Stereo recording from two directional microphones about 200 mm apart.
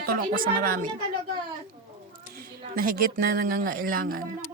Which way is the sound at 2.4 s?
45° right (ahead or behind).